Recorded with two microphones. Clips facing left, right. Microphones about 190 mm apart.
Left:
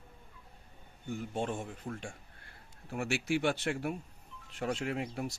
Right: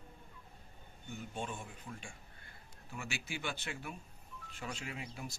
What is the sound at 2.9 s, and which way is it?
Speech, 70° left (ahead or behind).